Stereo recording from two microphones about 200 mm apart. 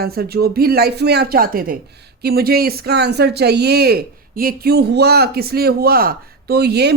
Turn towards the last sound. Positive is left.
turn(degrees=-55)  # may be behind; listen again after turning